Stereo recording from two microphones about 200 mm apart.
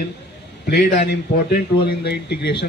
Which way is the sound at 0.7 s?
55° left (ahead or behind).